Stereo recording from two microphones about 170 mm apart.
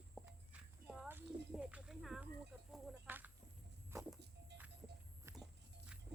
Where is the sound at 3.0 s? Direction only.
10° right (ahead or behind).